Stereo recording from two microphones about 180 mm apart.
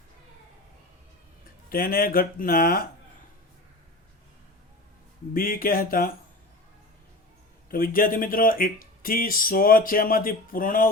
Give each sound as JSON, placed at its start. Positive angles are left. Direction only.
{"t": 1.7, "sound": "speech", "side_deg": 55}
{"t": 5.3, "sound": "speech", "side_deg": 50}
{"t": 7.7, "sound": "speech", "side_deg": 50}